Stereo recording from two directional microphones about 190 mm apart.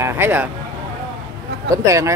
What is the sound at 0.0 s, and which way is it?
Speech, 10° right (ahead or behind).